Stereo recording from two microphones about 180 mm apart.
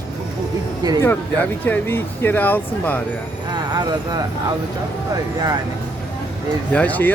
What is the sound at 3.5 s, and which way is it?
Speech, 20° right (ahead or behind).